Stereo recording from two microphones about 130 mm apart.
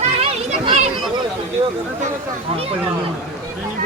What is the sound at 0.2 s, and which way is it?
Children playing, 45° right (ahead or behind).